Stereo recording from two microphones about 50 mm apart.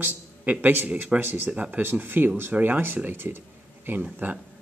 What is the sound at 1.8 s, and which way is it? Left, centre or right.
Speech, right.